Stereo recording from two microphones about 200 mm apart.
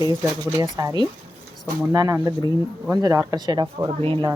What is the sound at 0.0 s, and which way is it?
Speech, 15° right (ahead or behind).